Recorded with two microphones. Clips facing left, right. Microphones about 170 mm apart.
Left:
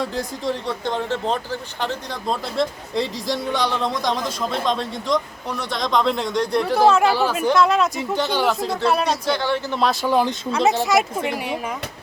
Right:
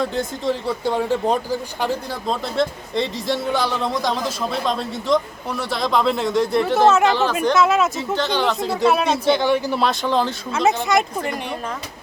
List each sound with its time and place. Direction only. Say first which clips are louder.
0.0 s speech: right 2 dB; centre (ahead or behind)
2.3 s speech: right 1 dB; centre (ahead or behind)
7.5 s speech: even; 5° right (ahead or behind)
7.9 s speech: even; 10° left (ahead or behind)
9.2 s speech: right 4 dB; 20° right (ahead or behind)
9.7 s speech: even; centre (ahead or behind)
10.5 s speech: even; centre (ahead or behind)